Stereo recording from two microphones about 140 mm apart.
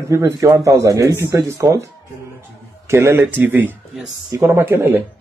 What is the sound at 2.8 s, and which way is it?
Speech, 20° right (ahead or behind).